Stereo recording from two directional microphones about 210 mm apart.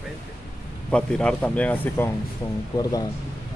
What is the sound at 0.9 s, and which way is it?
Speech, 5° left (ahead or behind).